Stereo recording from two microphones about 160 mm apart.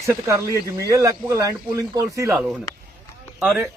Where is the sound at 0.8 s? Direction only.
20° right (ahead or behind).